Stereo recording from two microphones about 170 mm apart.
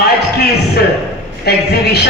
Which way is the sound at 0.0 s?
70° left (ahead or behind).